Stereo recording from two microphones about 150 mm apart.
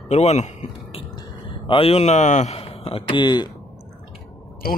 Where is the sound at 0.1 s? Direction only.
45° left (ahead or behind); by 3.4 s 30° left (ahead or behind).